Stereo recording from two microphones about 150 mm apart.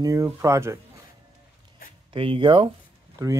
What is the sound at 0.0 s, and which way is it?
Speech, 25° right (ahead or behind).